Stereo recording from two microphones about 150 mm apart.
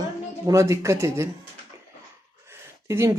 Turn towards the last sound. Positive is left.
turn(degrees=-20)  # may be behind; listen again after turning